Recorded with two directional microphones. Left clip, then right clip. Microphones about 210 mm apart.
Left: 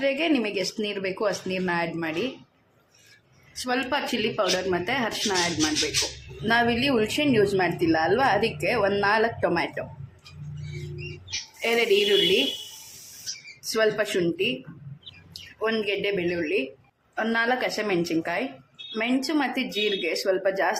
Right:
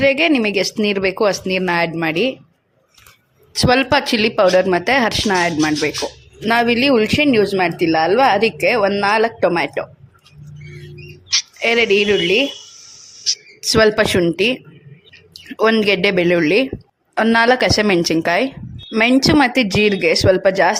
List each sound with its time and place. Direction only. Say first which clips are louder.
0.0 s speech: right 10 dB; 40° right (ahead or behind)
3.5 s speech: right 12 dB; 45° right (ahead or behind)
6.4 s speech: right 8 dB; 35° right (ahead or behind)
11.3 s speech: right 10 dB; 40° right (ahead or behind)
13.2 s speech: right 15 dB; 45° right (ahead or behind)
15.5 s speech: right 12 dB; 45° right (ahead or behind)